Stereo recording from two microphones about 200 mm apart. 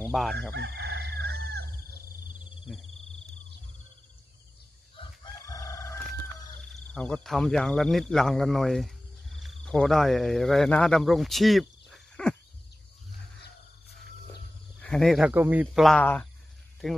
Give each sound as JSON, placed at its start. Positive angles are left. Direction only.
{"t": 0.0, "sound": "chicken", "side_deg": 0}
{"t": 0.5, "sound": "chicken", "side_deg": -55}
{"t": 2.7, "sound": "speech", "side_deg": 0}
{"t": 4.9, "sound": "crowing", "side_deg": 20}
{"t": 6.6, "sound": "speech", "side_deg": 5}
{"t": 14.8, "sound": "speech", "side_deg": 5}